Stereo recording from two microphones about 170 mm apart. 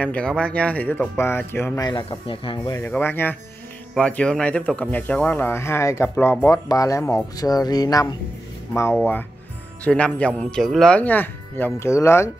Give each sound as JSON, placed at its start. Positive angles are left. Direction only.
{"t": 0.0, "sound": "speech", "side_deg": 5}
{"t": 1.9, "sound": "speech", "side_deg": 30}
{"t": 2.8, "sound": "speech", "side_deg": 10}